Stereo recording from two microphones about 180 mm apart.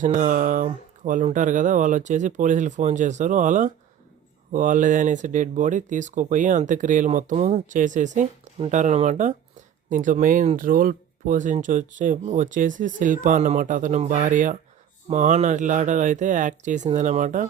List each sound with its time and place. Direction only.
0.0 s speech: 45° right (ahead or behind)